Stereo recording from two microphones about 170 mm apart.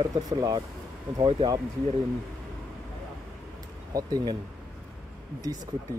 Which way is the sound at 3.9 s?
25° right (ahead or behind).